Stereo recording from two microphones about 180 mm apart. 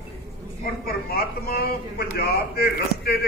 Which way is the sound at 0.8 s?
60° left (ahead or behind).